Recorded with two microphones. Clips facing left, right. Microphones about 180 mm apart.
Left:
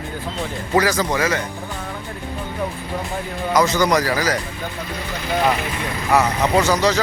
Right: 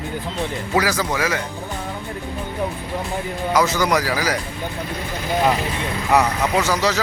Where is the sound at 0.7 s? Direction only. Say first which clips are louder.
Left 3 dB; 5° right (ahead or behind).